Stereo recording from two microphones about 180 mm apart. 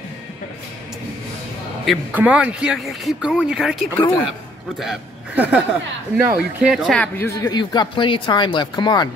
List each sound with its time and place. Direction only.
1.9 s speech: 5° right (ahead or behind)
7.4 s speech: 25° left (ahead or behind)